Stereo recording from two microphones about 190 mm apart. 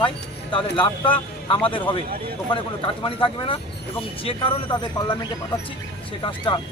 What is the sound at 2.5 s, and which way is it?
Speech, 25° left (ahead or behind).